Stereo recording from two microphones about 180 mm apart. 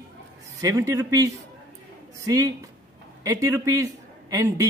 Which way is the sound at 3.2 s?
15° right (ahead or behind).